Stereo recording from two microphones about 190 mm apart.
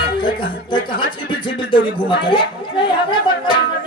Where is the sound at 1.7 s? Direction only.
25° left (ahead or behind).